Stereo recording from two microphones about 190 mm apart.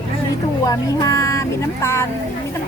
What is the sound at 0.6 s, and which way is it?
Speech, 15° left (ahead or behind).